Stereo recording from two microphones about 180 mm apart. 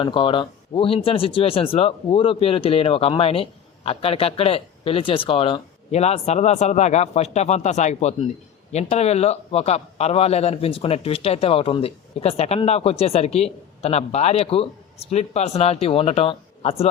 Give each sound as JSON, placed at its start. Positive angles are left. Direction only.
{"t": 0.0, "sound": "a man's voice", "side_deg": 25}